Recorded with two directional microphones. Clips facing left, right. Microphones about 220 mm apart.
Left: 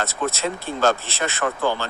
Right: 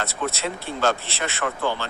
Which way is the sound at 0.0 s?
45° left (ahead or behind).